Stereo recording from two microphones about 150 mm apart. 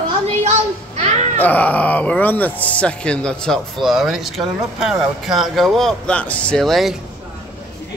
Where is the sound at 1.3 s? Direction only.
10° left (ahead or behind).